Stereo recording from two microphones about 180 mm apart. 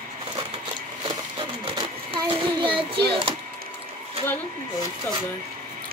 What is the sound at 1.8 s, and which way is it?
A child's voice, 25° right (ahead or behind).